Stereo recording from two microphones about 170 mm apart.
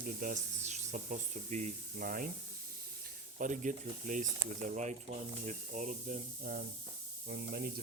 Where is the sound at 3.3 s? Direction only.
50° right (ahead or behind).